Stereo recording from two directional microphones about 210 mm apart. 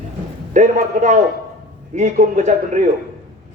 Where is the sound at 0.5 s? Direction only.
35° right (ahead or behind).